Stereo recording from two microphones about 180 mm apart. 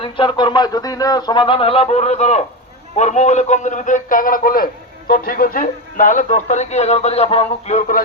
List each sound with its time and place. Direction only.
0.0 s a man's voice: 25° left (ahead or behind); by 8.0 s 45° left (ahead or behind)